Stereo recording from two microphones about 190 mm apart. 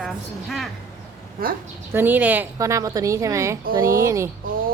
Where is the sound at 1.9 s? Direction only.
10° right (ahead or behind).